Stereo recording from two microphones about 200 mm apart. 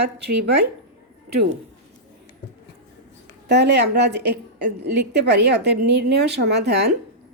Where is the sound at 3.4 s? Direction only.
60° right (ahead or behind).